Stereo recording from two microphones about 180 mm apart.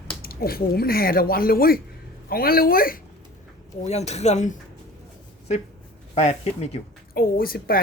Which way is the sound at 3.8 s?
40° left (ahead or behind).